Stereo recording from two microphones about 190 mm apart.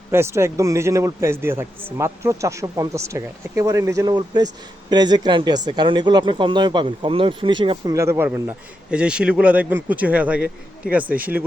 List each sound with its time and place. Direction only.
0.1 s a man's voice: 15° right (ahead or behind)
7.9 s a man's voice: 15° right (ahead or behind)